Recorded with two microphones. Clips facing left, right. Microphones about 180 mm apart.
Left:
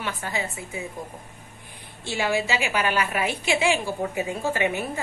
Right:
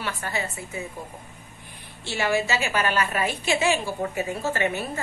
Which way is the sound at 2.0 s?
15° left (ahead or behind).